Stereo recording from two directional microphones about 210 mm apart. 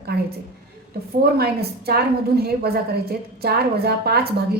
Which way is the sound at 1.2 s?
50° right (ahead or behind).